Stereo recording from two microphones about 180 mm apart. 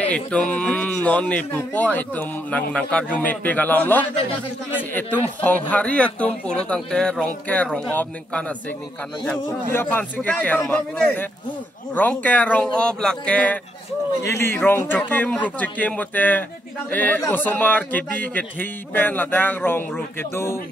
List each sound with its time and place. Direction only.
0.0 s a man's voice: 5° left (ahead or behind)
4.1 s a man's voice: 35° left (ahead or behind)
5.4 s a man's voice: 10° left (ahead or behind)